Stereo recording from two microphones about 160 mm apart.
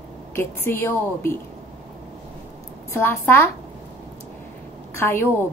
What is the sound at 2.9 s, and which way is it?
Speech, 15° left (ahead or behind).